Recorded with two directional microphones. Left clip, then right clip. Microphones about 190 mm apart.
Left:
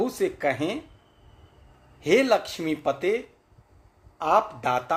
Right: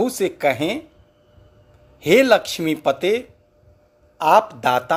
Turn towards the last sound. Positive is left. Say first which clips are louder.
# right 7 dB
turn(degrees=-30)  # may be behind; listen again after turning